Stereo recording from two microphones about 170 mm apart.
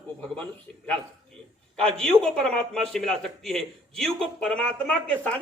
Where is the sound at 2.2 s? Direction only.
5° left (ahead or behind).